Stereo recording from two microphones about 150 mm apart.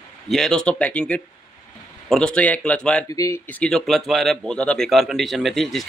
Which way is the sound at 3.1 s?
20° left (ahead or behind).